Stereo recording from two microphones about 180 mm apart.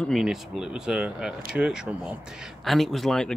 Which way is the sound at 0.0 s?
Centre (ahead or behind).